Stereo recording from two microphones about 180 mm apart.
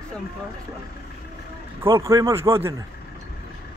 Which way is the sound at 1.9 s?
20° right (ahead or behind).